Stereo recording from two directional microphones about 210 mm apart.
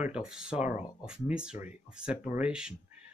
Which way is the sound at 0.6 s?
35° left (ahead or behind).